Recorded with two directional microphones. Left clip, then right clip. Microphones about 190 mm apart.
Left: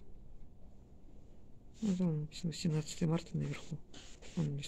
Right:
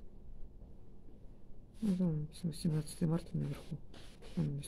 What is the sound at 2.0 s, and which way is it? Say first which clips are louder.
Speech: left 1 dB; 10° left (ahead or behind).